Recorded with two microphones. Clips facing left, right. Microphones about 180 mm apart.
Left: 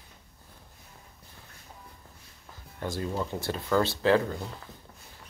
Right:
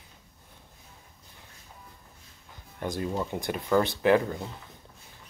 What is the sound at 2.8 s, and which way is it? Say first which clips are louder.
Speech: right 1 dB; 20° right (ahead or behind).